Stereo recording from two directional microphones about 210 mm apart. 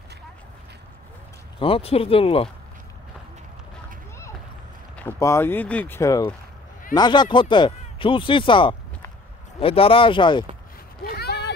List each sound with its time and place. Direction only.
1.6 s speech: 25° left (ahead or behind)
4.9 s speech: 10° left (ahead or behind)
11.1 s a sound: 50° left (ahead or behind)